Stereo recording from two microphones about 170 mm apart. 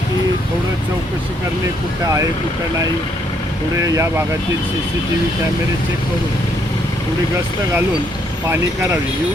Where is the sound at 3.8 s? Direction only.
20° right (ahead or behind).